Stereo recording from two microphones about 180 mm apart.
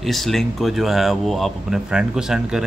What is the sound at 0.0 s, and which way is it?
Speech, centre (ahead or behind).